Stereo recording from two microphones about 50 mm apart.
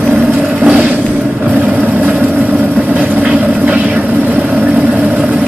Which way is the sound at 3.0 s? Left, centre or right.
Right.